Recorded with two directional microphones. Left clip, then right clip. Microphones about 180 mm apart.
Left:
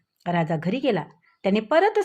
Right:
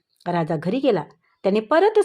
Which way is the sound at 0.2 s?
25° right (ahead or behind).